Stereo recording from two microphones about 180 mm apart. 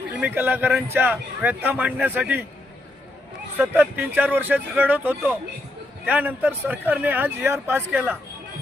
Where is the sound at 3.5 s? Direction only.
10° right (ahead or behind).